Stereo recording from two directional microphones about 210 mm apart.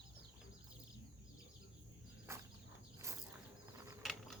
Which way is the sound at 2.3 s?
15° right (ahead or behind).